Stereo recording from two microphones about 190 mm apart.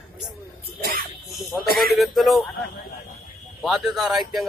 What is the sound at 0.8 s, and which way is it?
Music, 50° right (ahead or behind).